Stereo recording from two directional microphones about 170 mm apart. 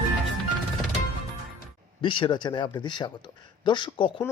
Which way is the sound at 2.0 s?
30° left (ahead or behind).